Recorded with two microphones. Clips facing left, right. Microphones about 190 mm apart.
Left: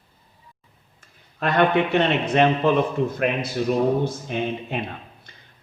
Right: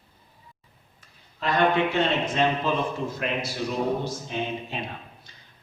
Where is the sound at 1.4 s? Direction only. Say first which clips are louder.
Left 3 dB; 60° left (ahead or behind).